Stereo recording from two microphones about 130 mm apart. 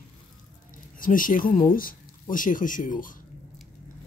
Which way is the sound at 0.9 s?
90° left.